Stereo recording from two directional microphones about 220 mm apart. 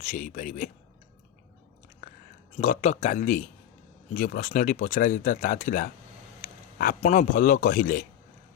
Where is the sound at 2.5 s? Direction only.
35° left (ahead or behind).